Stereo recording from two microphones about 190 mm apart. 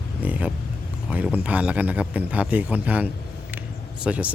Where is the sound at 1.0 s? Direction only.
5° right (ahead or behind).